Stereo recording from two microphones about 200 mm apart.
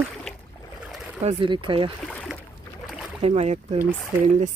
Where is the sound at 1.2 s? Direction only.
25° right (ahead or behind).